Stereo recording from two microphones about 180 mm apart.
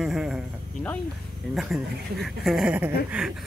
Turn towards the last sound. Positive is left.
turn(degrees=-5)  # may be behind; listen again after turning